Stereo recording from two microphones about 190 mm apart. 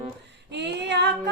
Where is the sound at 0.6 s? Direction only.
65° right (ahead or behind).